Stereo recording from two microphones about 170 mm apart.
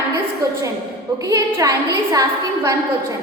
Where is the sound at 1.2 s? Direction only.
20° right (ahead or behind).